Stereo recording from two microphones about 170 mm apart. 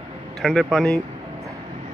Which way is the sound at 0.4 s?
Centre (ahead or behind).